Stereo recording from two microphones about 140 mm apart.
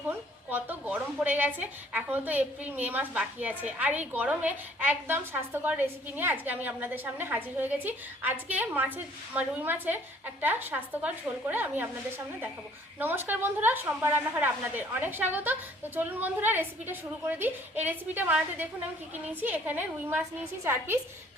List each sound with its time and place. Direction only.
0.1 s a woman's voice: 10° right (ahead or behind)